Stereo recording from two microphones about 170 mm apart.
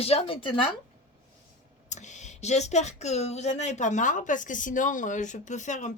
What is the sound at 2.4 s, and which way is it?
Speech, 40° left (ahead or behind).